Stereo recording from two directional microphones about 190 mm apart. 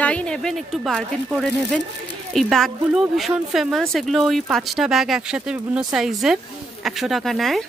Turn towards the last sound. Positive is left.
turn(degrees=0)  # may be behind; listen again after turning